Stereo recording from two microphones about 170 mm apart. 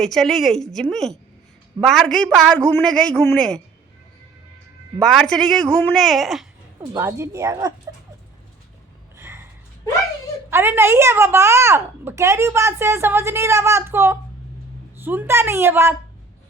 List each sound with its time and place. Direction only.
0.0 s a man's voice: centre (ahead or behind)
4.9 s a man's voice: 5° left (ahead or behind)
6.9 s a woman's voice: 15° right (ahead or behind)
9.1 s gasp: 15° right (ahead or behind)
10.5 s a woman's voice: 15° right (ahead or behind)